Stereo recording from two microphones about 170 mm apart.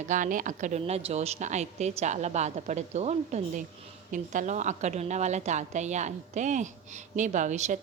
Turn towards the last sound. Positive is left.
turn(degrees=-45)  # may be behind; listen again after turning